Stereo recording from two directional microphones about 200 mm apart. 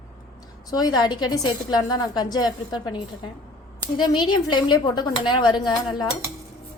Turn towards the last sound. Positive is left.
turn(degrees=20)  # may be behind; listen again after turning